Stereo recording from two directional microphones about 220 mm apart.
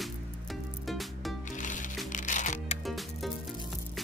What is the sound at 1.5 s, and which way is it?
Music, 35° left (ahead or behind).